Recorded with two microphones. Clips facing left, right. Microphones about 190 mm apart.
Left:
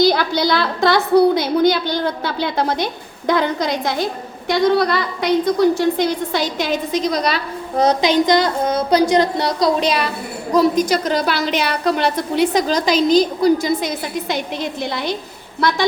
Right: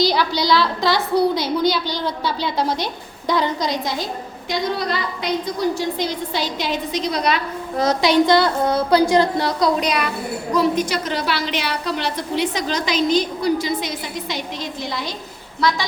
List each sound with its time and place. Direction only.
0.0 s a woman's voice: 50° left (ahead or behind)
7.8 s a woman's voice: 20° left (ahead or behind); by 15.8 s 55° left (ahead or behind)